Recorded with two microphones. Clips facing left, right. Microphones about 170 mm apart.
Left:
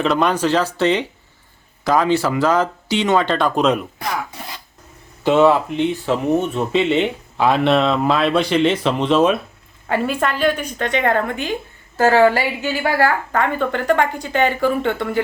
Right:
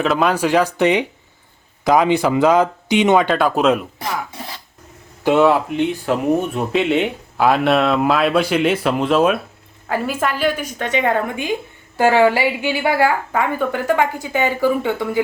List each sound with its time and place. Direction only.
0.0 s a woman's voice: 5° right (ahead or behind)
5.2 s a woman's voice: 5° right (ahead or behind)